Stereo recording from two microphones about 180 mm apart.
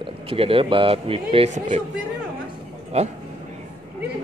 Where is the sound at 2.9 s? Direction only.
35° right (ahead or behind).